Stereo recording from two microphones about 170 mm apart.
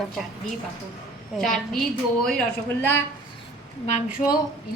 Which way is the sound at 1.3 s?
Centre (ahead or behind).